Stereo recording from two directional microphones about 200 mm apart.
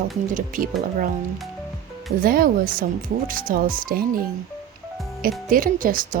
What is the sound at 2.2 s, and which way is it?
Speech, 45° right (ahead or behind).